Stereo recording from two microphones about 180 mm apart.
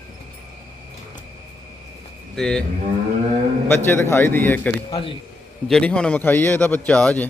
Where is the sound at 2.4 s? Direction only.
5° left (ahead or behind).